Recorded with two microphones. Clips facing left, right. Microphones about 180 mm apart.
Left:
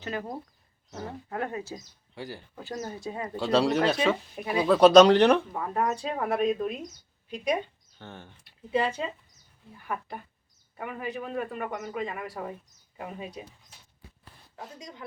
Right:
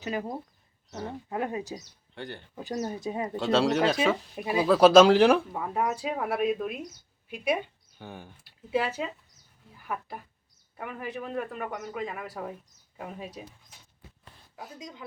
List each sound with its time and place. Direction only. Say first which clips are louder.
0.0 s speech: right 2 dB; 15° right (ahead or behind)
0.9 s speech: right 1 dB; centre (ahead or behind)
1.3 s speech: right 2 dB; 15° right (ahead or behind)
2.1 s speech: even; 5° left (ahead or behind)
2.6 s speech: right 4 dB; 15° right (ahead or behind)
3.3 s speech: left 1 dB; centre (ahead or behind)